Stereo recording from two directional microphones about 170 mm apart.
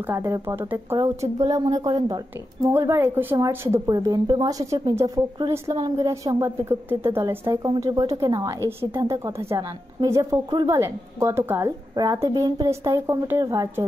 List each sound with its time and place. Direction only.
0.0 s a woman's voice: 15° right (ahead or behind)